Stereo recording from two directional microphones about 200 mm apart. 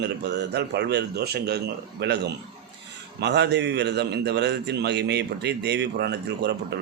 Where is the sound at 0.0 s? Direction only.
55° right (ahead or behind).